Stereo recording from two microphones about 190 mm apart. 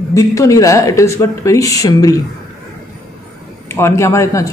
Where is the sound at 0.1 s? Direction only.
15° left (ahead or behind).